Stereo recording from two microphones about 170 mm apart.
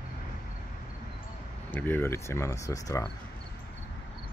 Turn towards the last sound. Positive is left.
turn(degrees=20)  # may be behind; listen again after turning